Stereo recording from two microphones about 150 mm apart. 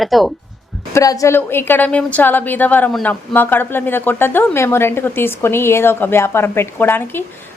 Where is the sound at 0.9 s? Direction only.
20° left (ahead or behind).